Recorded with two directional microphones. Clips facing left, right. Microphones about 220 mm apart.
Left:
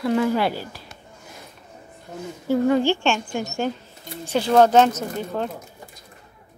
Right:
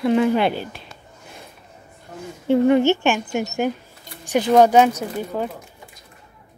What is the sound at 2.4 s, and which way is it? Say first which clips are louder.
Speech: right 4 dB; 20° right (ahead or behind).